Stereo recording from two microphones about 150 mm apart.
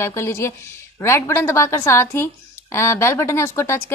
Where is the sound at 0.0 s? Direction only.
20° left (ahead or behind).